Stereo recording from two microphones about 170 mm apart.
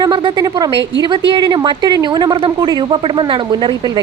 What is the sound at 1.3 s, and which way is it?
Speech, 25° right (ahead or behind).